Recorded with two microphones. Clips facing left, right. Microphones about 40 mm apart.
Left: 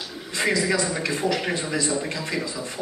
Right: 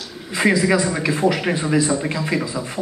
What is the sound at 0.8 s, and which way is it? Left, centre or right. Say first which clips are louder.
Speech: right 6 dB; centre.